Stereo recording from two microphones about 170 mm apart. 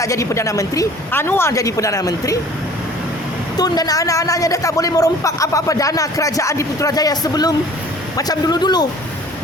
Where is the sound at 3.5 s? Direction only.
20° left (ahead or behind).